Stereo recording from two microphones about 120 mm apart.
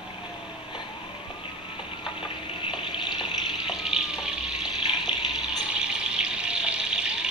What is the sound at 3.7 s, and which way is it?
Water tap, 5° right (ahead or behind).